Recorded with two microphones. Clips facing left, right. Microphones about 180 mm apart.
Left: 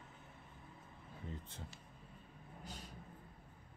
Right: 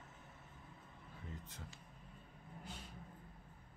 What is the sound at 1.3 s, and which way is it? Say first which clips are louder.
Speech: left 2 dB; 30° left (ahead or behind).